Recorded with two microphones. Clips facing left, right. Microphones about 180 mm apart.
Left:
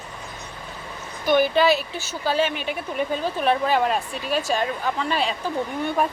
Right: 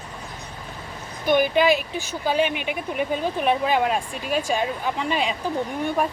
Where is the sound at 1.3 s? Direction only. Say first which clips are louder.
Even; 15° right (ahead or behind).